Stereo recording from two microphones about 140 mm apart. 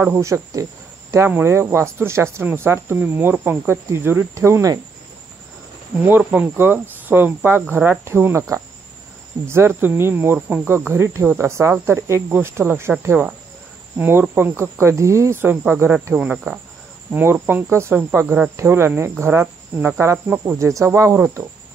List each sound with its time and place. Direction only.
0.0 s speech: 20° right (ahead or behind)
6.0 s speech: 15° right (ahead or behind)